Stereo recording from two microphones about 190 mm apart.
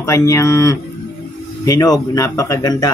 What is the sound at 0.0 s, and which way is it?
A man's voice, 15° left (ahead or behind).